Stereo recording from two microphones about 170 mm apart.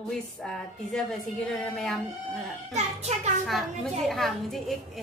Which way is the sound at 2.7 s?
40° right (ahead or behind).